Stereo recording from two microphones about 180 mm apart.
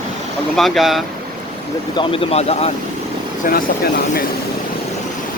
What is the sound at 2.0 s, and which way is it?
Speech, 30° left (ahead or behind).